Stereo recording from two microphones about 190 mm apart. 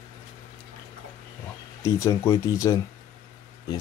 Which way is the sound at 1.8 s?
15° left (ahead or behind).